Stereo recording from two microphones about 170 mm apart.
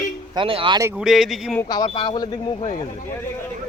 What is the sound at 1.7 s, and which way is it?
Speech, 25° left (ahead or behind).